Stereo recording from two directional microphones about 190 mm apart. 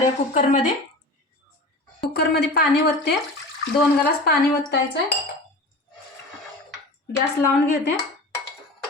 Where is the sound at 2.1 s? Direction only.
55° left (ahead or behind).